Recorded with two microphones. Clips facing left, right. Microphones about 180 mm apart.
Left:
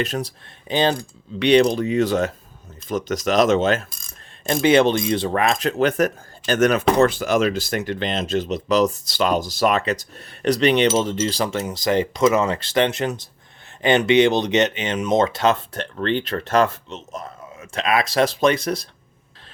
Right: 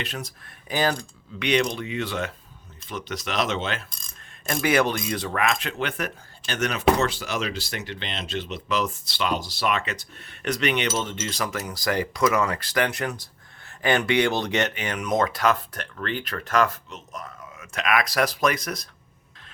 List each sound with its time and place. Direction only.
0.0 s speech: 35° left (ahead or behind)
4.4 s speech: 25° left (ahead or behind)